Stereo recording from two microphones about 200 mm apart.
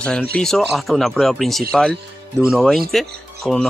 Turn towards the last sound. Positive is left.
turn(degrees=0)  # may be behind; listen again after turning